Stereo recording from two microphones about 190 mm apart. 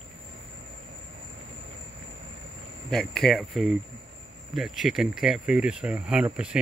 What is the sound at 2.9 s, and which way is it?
Speech, centre (ahead or behind).